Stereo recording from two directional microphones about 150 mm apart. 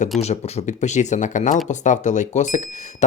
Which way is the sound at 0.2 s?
45° left (ahead or behind).